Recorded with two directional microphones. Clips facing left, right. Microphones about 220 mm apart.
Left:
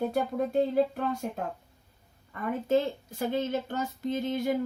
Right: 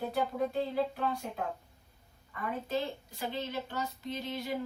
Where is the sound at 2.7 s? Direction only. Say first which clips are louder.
Left 12 dB; 50° left (ahead or behind).